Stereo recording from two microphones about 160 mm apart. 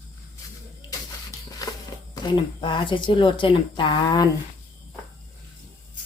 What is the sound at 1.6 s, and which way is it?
Speech, 20° left (ahead or behind).